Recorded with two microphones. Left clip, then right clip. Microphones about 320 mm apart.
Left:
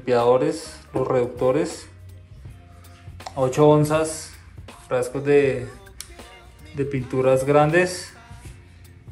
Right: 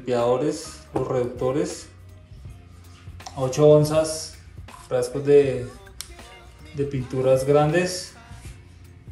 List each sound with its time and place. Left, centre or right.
0.0 s a man's voice: centre
3.2 s speech: centre
4.0 s speech: right
4.6 s music: centre
5.2 s speech: centre
5.6 s music: centre
7.0 s a man's voice: centre
8.1 s music: centre